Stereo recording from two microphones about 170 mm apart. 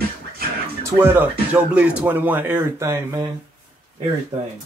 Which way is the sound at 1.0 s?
10° right (ahead or behind).